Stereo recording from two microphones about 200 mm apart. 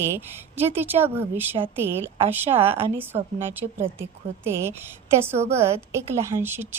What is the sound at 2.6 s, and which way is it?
Speech, 30° right (ahead or behind).